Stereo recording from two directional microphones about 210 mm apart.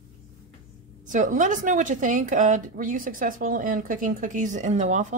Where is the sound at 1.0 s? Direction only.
35° right (ahead or behind).